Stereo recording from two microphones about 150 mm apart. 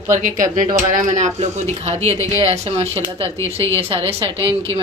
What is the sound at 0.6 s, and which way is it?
Speech, 30° right (ahead or behind).